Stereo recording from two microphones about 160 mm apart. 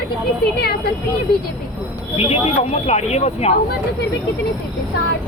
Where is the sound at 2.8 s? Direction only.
40° left (ahead or behind).